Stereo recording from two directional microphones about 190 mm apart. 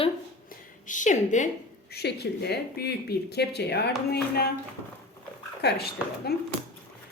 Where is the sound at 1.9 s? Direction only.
60° left (ahead or behind).